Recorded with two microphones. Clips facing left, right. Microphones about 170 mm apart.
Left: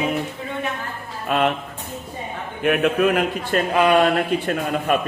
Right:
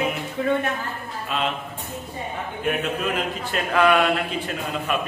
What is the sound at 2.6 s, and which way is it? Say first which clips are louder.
Speech: left 8 dB; 60° left (ahead or behind).